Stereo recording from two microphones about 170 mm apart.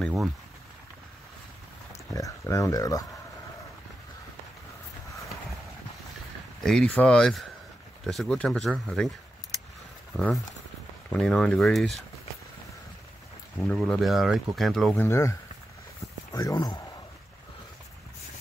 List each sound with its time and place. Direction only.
0.0 s speech: centre (ahead or behind)
2.1 s speech: 20° left (ahead or behind)
6.6 s speech: 5° left (ahead or behind)
10.1 s speech: centre (ahead or behind)
13.6 s speech: centre (ahead or behind)
15.0 s a man's voice: 15° left (ahead or behind)